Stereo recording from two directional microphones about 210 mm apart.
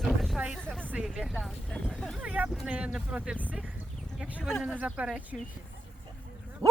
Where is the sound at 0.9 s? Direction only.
5° right (ahead or behind).